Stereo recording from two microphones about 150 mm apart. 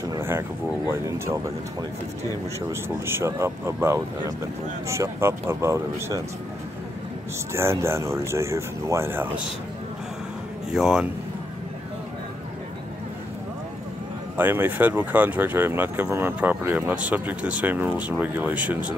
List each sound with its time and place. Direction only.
0.0 s a sound: 20° right (ahead or behind)
0.8 s speech: 15° right (ahead or behind)
7.5 s speech: 15° right (ahead or behind)
10.7 s speech: 5° right (ahead or behind)
14.3 s speech: 15° right (ahead or behind)